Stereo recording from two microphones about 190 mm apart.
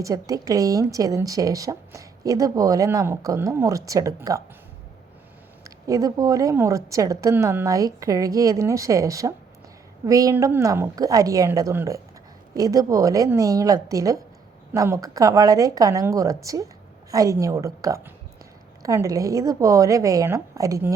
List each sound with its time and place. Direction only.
0.0 s speech: 20° right (ahead or behind)
5.6 s speech: 15° right (ahead or behind)